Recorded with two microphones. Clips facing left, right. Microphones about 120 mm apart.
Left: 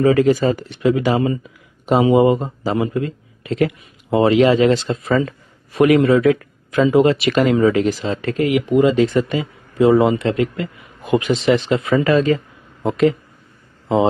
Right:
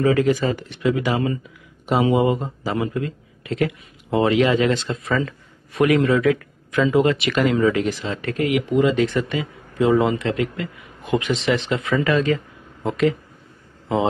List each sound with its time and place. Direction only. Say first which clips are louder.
0.0 s speech: left 4 dB; 40° left (ahead or behind)